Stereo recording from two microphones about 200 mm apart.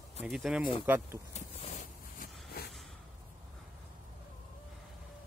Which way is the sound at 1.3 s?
35° left (ahead or behind).